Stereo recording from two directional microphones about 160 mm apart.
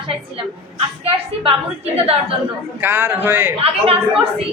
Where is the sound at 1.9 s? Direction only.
35° right (ahead or behind).